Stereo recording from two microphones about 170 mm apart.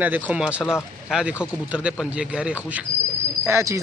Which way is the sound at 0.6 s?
15° left (ahead or behind).